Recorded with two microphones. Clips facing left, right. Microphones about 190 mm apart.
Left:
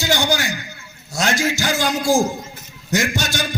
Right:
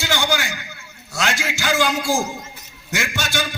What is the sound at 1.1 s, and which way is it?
A man's voice, 40° left (ahead or behind).